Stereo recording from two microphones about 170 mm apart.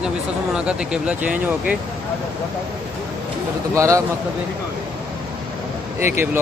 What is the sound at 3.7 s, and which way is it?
Speech, 20° right (ahead or behind).